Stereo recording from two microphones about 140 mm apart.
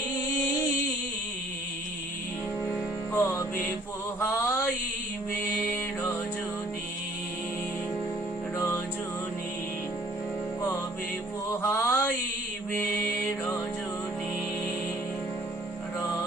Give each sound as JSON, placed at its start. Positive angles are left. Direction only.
{"t": 3.1, "sound": "music", "side_deg": 20}
{"t": 4.4, "sound": "mantra", "side_deg": 15}
{"t": 5.7, "sound": "music", "side_deg": 15}
{"t": 8.5, "sound": "music", "side_deg": 20}
{"t": 11.6, "sound": "mantra", "side_deg": 15}